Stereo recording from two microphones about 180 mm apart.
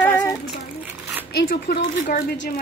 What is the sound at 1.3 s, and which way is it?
Speech, 60° left (ahead or behind).